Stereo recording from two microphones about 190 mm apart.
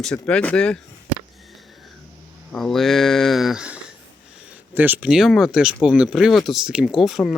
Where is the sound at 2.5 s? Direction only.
Centre (ahead or behind).